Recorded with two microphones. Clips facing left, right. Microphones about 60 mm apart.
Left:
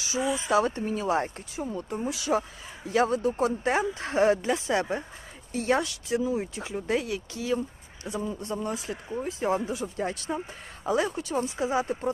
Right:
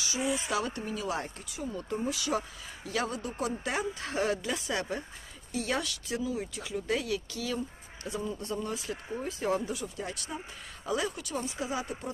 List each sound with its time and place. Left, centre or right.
0.0 s speech: left